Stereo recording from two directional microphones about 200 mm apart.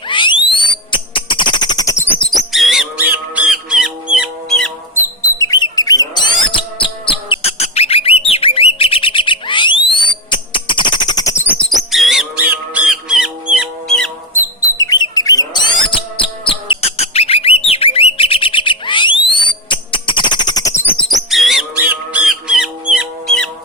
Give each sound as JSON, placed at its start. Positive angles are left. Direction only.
{"t": 0.1, "sound": "a sound", "side_deg": 25}
{"t": 2.2, "sound": "bird", "side_deg": 0}
{"t": 5.4, "sound": "bird", "side_deg": 20}
{"t": 11.6, "sound": "bird", "side_deg": 0}
{"t": 14.8, "sound": "bird", "side_deg": 20}
{"t": 21.2, "sound": "bird", "side_deg": 0}